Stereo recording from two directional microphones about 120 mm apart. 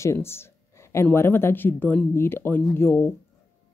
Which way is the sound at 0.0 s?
20° left (ahead or behind).